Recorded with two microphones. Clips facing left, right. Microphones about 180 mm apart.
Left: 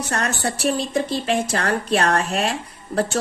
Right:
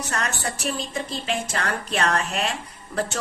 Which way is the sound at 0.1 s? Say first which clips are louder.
Left 5 dB; 35° left (ahead or behind).